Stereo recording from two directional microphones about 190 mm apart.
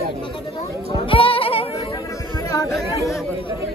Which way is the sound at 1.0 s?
30° left (ahead or behind).